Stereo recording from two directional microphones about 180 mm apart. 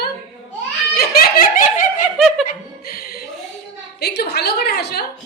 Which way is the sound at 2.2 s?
Centre (ahead or behind).